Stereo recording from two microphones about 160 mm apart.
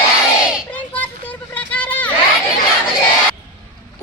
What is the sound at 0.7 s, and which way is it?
Children playing, 10° left (ahead or behind).